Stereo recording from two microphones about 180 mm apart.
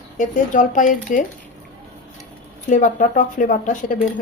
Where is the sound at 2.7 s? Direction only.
45° left (ahead or behind).